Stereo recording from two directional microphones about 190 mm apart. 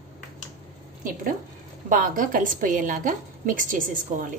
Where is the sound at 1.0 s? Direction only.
45° right (ahead or behind).